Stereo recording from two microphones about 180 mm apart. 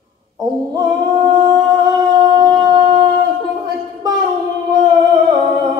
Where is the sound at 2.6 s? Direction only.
25° right (ahead or behind).